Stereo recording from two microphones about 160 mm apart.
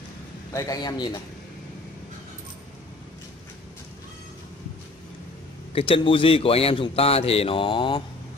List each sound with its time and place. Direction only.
0.5 s a man's voice: 20° left (ahead or behind)
5.7 s a man's voice: 35° left (ahead or behind)